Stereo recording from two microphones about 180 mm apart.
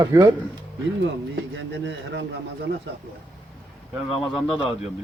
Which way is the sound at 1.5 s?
85° right.